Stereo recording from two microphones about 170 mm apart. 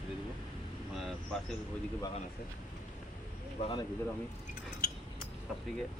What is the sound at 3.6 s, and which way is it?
Speech, 30° left (ahead or behind).